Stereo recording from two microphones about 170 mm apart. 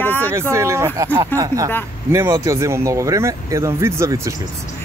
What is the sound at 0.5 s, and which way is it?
Speech, 15° right (ahead or behind).